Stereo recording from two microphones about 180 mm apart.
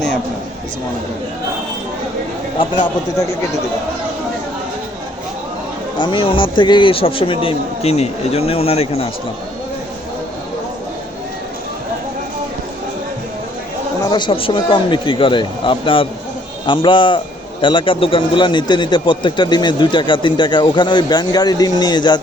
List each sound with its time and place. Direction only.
2.6 s a man's voice: 25° left (ahead or behind)
6.0 s a man's voice: 25° left (ahead or behind)
14.0 s a man's voice: 25° left (ahead or behind)